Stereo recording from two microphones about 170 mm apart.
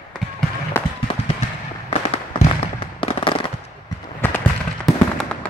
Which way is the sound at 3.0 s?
30° left (ahead or behind).